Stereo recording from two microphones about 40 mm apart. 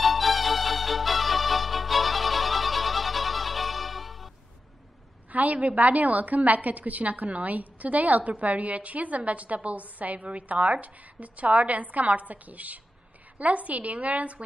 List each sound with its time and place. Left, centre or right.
0.0 s music: centre
5.3 s a woman's voice: right